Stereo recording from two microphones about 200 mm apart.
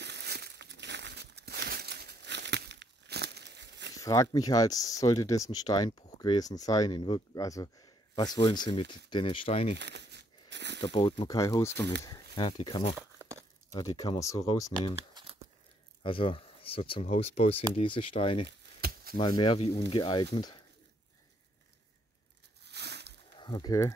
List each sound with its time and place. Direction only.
0.0 s crumpling: 55° right (ahead or behind)
3.9 s speech: 15° left (ahead or behind)
9.8 s crumpling: 60° right (ahead or behind)
10.8 s speech: 25° left (ahead or behind)
15.0 s crumpling: 25° right (ahead or behind)
16.0 s speech: 25° left (ahead or behind)
18.8 s chop: 50° right (ahead or behind)
19.1 s speech: 25° left (ahead or behind)
22.7 s a sound: 55° right (ahead or behind)
23.3 s speech: 20° left (ahead or behind)